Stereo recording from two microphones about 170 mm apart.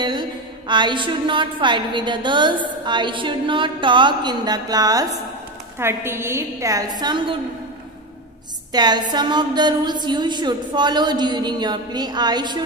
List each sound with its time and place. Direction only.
0.0 s a woman's voice: 25° right (ahead or behind)
8.7 s a woman's voice: 25° right (ahead or behind)